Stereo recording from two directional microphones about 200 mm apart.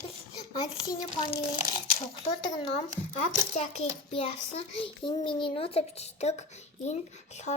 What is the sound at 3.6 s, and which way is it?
A child's voice, 30° left (ahead or behind).